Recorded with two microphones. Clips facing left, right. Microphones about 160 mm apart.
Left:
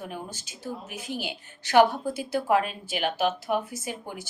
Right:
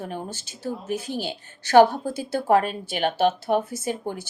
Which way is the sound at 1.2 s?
35° right (ahead or behind).